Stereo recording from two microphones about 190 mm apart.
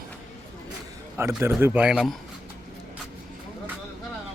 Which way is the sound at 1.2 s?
10° right (ahead or behind).